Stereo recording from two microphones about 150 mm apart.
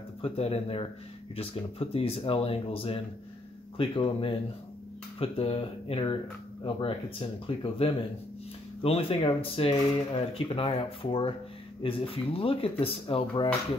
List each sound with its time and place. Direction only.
0.2 s speech: 40° left (ahead or behind)